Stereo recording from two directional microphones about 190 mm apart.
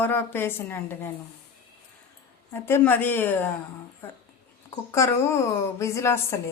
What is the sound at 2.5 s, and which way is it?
Speech, 10° left (ahead or behind).